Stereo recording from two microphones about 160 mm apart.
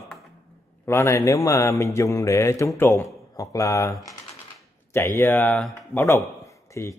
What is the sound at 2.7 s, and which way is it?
Speech, 15° left (ahead or behind).